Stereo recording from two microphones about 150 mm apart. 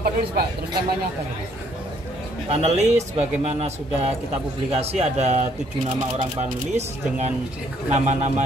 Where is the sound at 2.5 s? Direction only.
45° right (ahead or behind).